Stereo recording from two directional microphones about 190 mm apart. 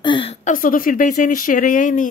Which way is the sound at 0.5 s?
45° left (ahead or behind).